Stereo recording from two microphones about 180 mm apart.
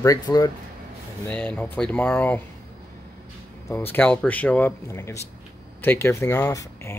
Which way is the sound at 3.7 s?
10° left (ahead or behind).